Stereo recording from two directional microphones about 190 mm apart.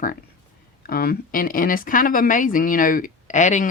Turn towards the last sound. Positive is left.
turn(degrees=40)  # may be behind; listen again after turning